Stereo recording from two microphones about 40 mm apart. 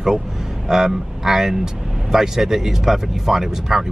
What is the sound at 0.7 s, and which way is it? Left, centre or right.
Speech, centre.